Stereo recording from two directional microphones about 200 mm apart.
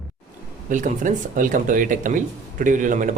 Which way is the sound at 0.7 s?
40° right (ahead or behind).